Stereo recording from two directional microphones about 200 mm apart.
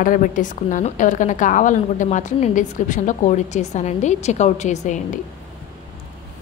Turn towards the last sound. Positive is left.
turn(degrees=35)  # may be behind; listen again after turning